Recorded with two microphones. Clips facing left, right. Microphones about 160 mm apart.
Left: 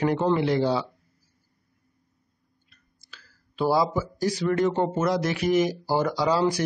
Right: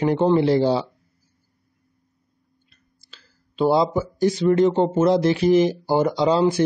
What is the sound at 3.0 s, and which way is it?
Speech, 25° right (ahead or behind).